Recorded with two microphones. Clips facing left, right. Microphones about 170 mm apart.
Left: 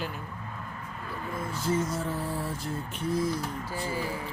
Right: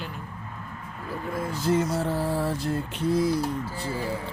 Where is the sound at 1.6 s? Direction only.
70° right (ahead or behind).